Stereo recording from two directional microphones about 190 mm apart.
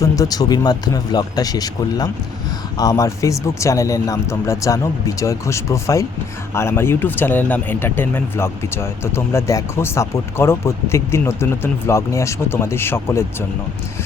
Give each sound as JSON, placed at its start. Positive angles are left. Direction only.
{"t": 0.0, "sound": "speech", "side_deg": 20}